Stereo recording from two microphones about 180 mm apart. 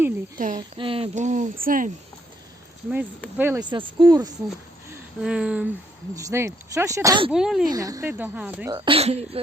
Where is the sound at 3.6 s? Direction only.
25° right (ahead or behind).